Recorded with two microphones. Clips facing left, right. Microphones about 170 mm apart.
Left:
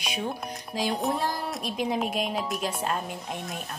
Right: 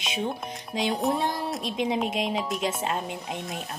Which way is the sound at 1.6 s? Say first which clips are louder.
Right 1 dB; 25° right (ahead or behind).